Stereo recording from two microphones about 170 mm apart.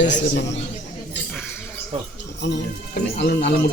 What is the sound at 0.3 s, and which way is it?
Speech, 90° left.